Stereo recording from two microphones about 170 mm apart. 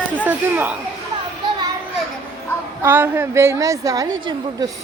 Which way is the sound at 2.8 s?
10° right (ahead or behind).